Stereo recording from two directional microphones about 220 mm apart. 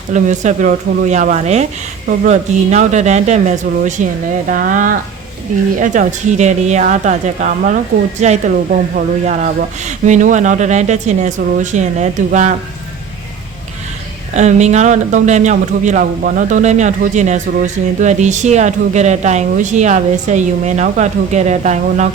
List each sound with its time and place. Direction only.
0.1 s speech: 35° right (ahead or behind)
14.3 s speech: 30° right (ahead or behind)